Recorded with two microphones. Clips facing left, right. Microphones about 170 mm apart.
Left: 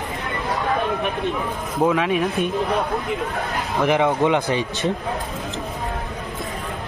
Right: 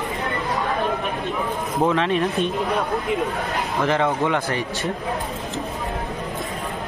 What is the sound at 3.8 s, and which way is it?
Speech, 15° left (ahead or behind).